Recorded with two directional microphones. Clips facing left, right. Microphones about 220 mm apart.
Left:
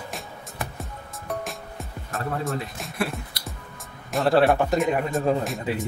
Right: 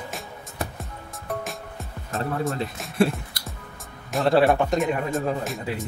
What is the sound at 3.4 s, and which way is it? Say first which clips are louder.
Music: left 1 dB; 50° right (ahead or behind).